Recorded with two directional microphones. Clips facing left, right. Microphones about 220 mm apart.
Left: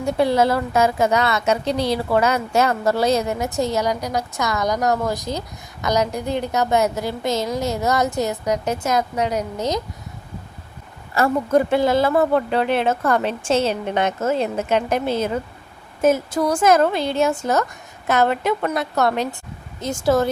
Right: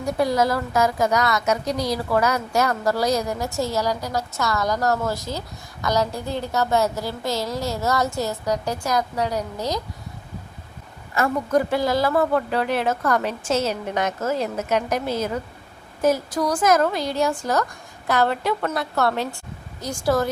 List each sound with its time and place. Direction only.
0.0 s a woman's voice: 25° left (ahead or behind)
11.1 s a woman's voice: 30° left (ahead or behind)